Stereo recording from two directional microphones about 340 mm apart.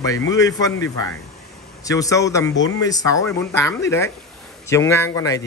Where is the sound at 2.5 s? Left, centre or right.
Left.